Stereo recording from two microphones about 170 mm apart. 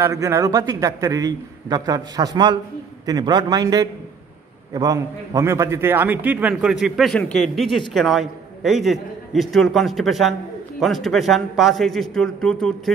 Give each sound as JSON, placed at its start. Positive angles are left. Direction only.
{"t": 0.0, "sound": "a man's voice", "side_deg": -15}